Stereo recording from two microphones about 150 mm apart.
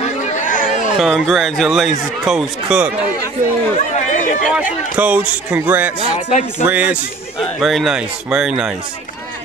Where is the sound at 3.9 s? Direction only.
55° left (ahead or behind).